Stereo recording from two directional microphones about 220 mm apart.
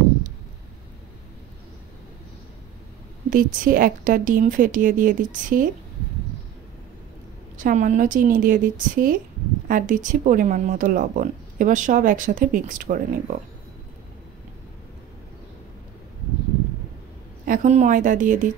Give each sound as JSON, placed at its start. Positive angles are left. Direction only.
{"t": 3.3, "sound": "speech", "side_deg": -40}
{"t": 7.5, "sound": "speech", "side_deg": -35}
{"t": 17.5, "sound": "speech", "side_deg": -35}